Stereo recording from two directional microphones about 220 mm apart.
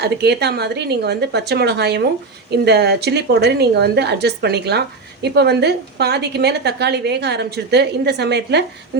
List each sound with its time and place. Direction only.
0.0 s a woman's voice: 50° right (ahead or behind)